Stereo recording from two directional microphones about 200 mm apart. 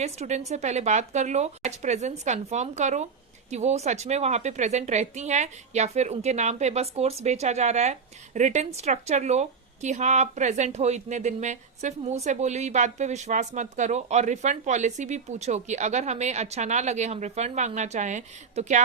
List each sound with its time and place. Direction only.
0.0 s a woman's voice: 35° right (ahead or behind)